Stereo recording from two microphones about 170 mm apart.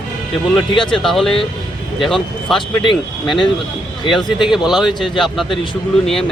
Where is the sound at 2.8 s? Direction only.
30° left (ahead or behind).